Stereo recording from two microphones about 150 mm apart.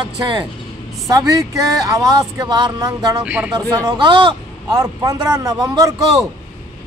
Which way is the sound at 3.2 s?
10° right (ahead or behind).